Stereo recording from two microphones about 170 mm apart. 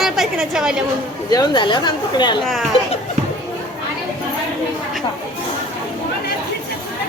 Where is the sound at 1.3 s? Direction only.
25° left (ahead or behind).